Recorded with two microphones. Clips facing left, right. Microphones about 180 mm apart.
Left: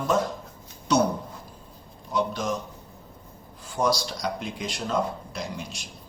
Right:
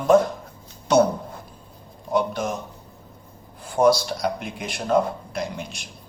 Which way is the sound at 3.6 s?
55° right (ahead or behind).